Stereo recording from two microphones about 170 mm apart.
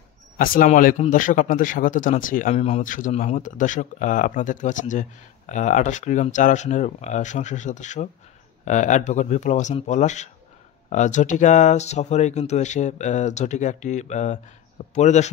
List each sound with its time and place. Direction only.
0.4 s speech: 55° left (ahead or behind)